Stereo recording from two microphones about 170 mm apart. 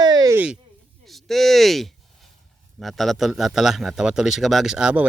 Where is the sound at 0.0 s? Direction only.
20° right (ahead or behind).